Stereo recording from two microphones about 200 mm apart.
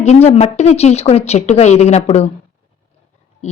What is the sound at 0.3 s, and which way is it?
A woman's voice, 35° left (ahead or behind).